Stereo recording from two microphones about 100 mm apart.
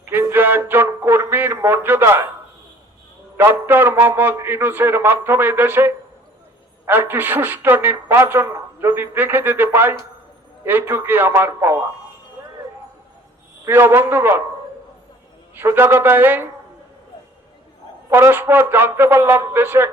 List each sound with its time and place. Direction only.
0.0 s speech: 25° right (ahead or behind)
3.3 s a woman's voice: 20° right (ahead or behind)
13.7 s a woman's voice: 20° right (ahead or behind)
15.5 s a woman's voice: 25° right (ahead or behind)
18.1 s a woman's voice: 20° right (ahead or behind)